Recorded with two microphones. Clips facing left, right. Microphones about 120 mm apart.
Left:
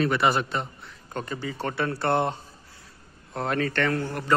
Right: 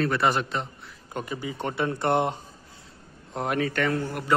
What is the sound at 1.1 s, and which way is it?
A man's voice, 10° right (ahead or behind).